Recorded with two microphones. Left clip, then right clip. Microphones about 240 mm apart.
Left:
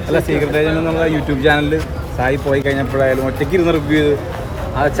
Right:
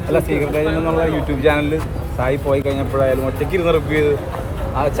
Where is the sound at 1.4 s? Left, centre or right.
Left.